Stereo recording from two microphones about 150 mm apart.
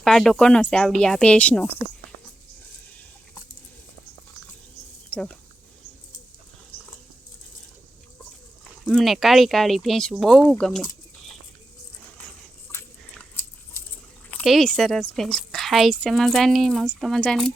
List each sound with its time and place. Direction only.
0.0 s speech: 5° left (ahead or behind)
5.1 s speech: 5° left (ahead or behind)
8.8 s speech: centre (ahead or behind)
12.7 s biting: 15° left (ahead or behind)
14.4 s speech: centre (ahead or behind)